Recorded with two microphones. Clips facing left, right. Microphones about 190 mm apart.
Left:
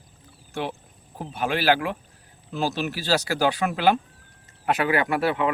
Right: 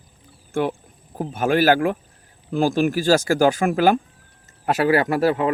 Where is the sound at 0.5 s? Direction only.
50° right (ahead or behind).